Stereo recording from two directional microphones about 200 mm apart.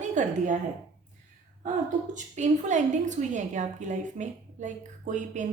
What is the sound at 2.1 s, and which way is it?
A woman's voice, 35° right (ahead or behind).